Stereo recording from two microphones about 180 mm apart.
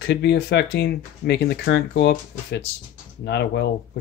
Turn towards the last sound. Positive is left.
turn(degrees=70)  # may be behind; listen again after turning